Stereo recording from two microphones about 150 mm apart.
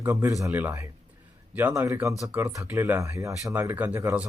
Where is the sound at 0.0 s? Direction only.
20° right (ahead or behind).